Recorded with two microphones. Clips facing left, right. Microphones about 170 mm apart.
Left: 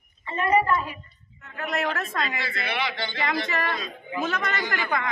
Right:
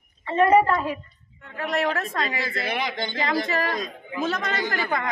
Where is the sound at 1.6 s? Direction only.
30° right (ahead or behind).